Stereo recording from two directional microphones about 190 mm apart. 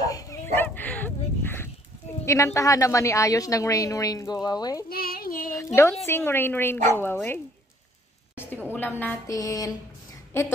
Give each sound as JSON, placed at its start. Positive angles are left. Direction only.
{"t": 0.0, "sound": "bow-wow", "side_deg": 20}
{"t": 2.2, "sound": "a woman's voice", "side_deg": 15}
{"t": 4.8, "sound": "a sound", "side_deg": 50}
{"t": 6.0, "sound": "a woman's voice", "side_deg": 10}